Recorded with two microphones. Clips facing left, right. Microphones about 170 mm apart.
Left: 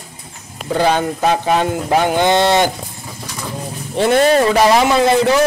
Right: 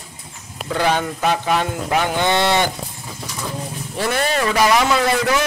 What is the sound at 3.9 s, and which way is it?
Speech, 25° left (ahead or behind).